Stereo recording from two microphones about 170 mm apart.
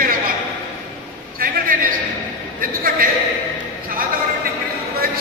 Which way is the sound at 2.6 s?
60° right (ahead or behind).